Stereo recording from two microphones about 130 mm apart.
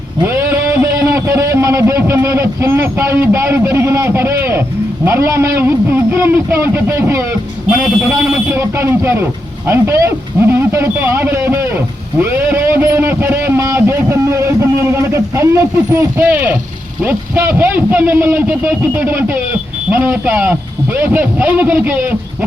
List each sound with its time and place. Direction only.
0.3 s speech: 20° right (ahead or behind)
8.0 s speech: 10° right (ahead or behind)
8.5 s a man's voice: 20° right (ahead or behind)